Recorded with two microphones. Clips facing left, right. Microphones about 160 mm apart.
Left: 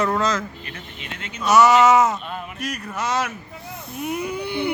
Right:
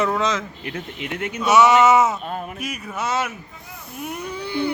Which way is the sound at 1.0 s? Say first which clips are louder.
Right 10 dB; 60° right (ahead or behind).